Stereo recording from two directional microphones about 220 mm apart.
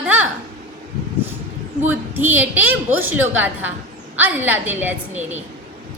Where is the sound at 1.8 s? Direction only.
10° right (ahead or behind).